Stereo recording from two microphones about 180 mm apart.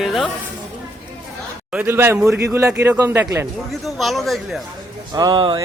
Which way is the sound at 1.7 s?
10° right (ahead or behind).